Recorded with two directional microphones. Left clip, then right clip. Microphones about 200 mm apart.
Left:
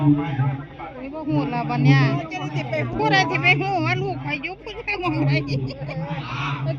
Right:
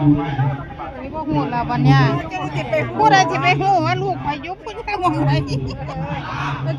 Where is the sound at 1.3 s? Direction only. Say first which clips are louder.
Right 3 dB; 20° right (ahead or behind).